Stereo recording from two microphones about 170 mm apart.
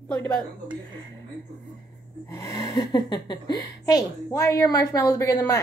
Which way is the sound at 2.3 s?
20° left (ahead or behind).